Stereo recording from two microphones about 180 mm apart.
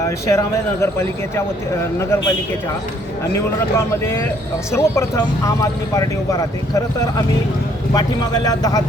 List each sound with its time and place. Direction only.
0.3 s speech: 15° left (ahead or behind)
3.3 s a man's voice: 15° left (ahead or behind)